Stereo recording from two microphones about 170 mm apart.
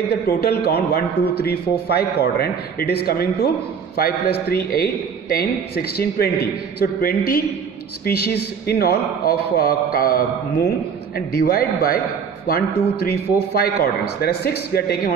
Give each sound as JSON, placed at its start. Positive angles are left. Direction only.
{"t": 0.7, "sound": "a man's voice", "side_deg": 70}